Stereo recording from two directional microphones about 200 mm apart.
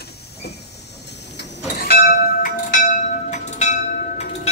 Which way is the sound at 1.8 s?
45° left (ahead or behind).